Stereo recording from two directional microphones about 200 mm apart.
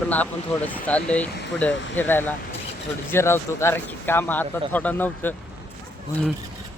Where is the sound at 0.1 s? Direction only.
10° left (ahead or behind).